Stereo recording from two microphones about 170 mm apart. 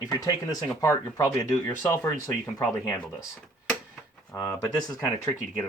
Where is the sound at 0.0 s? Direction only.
20° left (ahead or behind).